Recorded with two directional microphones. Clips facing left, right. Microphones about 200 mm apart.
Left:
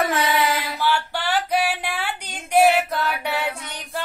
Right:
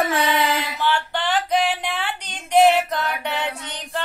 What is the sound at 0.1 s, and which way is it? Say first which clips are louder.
Music: right 1 dB; 30° right (ahead or behind).